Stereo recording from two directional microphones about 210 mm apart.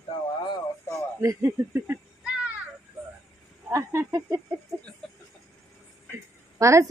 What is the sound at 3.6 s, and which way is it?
Speech, 15° right (ahead or behind).